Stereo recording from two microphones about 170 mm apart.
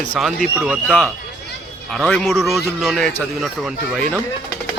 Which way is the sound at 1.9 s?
5° left (ahead or behind).